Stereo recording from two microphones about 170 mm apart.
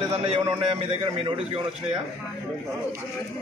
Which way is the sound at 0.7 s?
35° right (ahead or behind).